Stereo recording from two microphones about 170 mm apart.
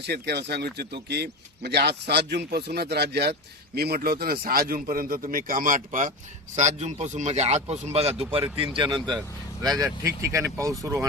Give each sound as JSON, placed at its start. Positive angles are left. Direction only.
{"t": 0.0, "sound": "a man's voice", "side_deg": -75}